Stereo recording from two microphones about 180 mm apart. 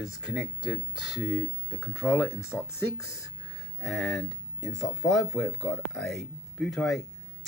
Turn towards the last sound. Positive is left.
turn(degrees=0)  # may be behind; listen again after turning